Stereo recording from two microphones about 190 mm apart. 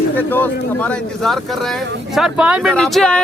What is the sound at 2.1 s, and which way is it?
Speech, 5° right (ahead or behind).